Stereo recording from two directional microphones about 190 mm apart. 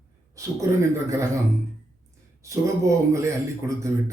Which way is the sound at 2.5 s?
15° right (ahead or behind).